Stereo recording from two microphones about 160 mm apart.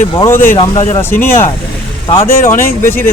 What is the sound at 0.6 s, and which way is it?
Speech, 30° left (ahead or behind).